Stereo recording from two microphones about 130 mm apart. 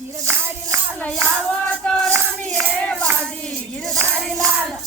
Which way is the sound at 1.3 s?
5° left (ahead or behind).